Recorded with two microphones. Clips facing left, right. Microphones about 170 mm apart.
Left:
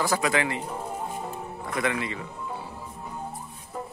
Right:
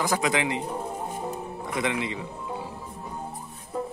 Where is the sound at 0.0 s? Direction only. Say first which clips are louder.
Even; 15° right (ahead or behind).